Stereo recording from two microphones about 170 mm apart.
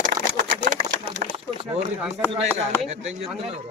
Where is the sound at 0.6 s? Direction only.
50° right (ahead or behind).